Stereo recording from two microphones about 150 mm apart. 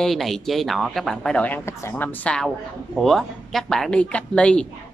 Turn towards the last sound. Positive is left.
turn(degrees=5)  # may be behind; listen again after turning